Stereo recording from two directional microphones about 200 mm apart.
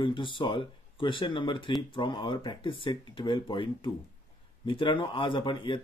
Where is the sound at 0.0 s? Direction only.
25° left (ahead or behind).